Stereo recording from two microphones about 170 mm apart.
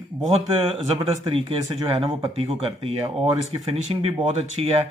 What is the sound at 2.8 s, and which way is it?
Speech, 30° right (ahead or behind).